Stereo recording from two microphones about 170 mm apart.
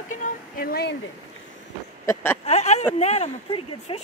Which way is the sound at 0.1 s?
55° left (ahead or behind).